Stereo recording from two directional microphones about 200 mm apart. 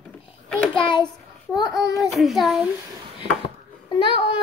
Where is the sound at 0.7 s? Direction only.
25° left (ahead or behind).